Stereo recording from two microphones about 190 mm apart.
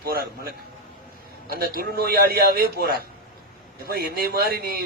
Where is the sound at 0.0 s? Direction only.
55° right (ahead or behind).